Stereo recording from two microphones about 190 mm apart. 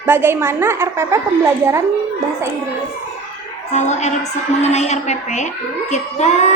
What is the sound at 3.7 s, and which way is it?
A woman's voice, 35° left (ahead or behind).